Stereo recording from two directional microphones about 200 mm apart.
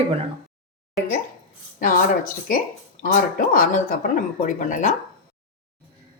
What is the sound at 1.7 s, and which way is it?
Speech, 45° left (ahead or behind).